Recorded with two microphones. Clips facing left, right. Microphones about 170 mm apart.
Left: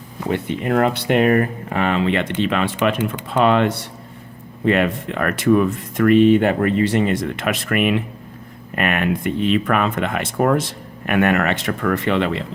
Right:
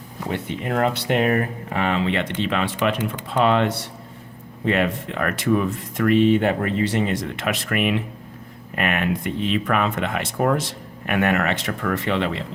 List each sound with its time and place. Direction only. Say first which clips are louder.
0.3 s speech: left 5 dB; 60° left (ahead or behind)